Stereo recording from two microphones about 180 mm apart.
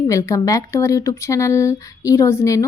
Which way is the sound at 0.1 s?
15° left (ahead or behind).